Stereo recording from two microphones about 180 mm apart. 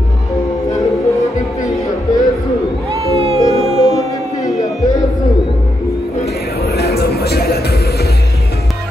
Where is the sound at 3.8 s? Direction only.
20° left (ahead or behind).